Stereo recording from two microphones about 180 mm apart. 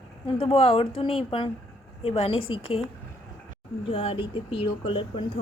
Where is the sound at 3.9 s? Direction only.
30° left (ahead or behind).